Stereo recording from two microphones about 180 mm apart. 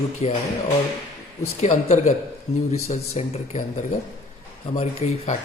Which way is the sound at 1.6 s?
40° left (ahead or behind).